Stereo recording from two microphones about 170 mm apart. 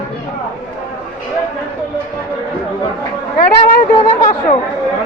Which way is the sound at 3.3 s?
55° left (ahead or behind).